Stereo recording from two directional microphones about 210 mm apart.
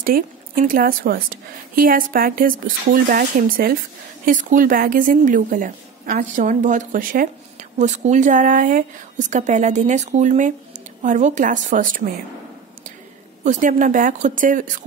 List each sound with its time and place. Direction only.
0.0 s a woman's voice: 40° right (ahead or behind)
13.4 s a woman's voice: 35° right (ahead or behind)